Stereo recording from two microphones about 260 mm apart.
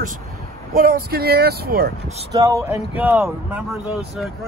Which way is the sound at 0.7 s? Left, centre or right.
Right.